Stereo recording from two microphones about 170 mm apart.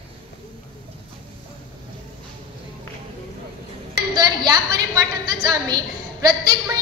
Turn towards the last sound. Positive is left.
turn(degrees=-25)  # may be behind; listen again after turning